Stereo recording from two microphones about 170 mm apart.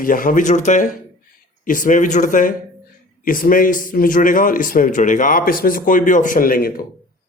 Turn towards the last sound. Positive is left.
turn(degrees=60)  # may be behind; listen again after turning